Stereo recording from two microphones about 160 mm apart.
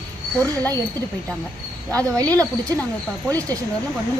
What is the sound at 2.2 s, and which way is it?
Speech, 20° right (ahead or behind).